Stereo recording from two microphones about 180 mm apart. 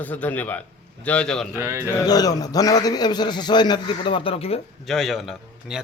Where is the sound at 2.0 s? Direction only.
20° left (ahead or behind).